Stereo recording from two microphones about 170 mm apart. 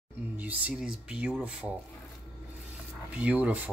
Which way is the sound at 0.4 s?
10° right (ahead or behind).